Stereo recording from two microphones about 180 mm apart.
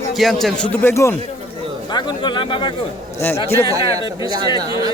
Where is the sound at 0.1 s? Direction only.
Centre (ahead or behind).